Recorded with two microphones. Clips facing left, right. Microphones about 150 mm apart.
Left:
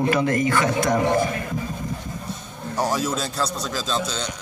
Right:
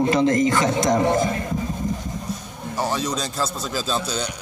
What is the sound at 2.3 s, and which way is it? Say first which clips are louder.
Music: right 5 dB; 30° left (ahead or behind).